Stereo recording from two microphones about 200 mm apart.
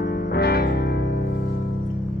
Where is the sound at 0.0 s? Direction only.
55° left (ahead or behind).